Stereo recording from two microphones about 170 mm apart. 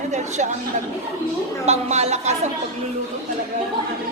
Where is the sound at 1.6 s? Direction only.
40° right (ahead or behind).